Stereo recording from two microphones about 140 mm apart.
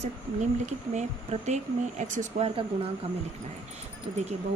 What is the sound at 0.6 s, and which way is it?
A woman's voice, 55° right (ahead or behind).